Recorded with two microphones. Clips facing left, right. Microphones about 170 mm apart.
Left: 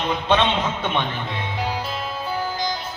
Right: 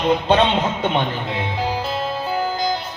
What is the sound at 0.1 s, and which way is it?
Speech, 40° right (ahead or behind).